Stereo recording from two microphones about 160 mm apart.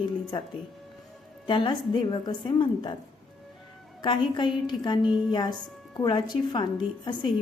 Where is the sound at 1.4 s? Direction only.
30° left (ahead or behind).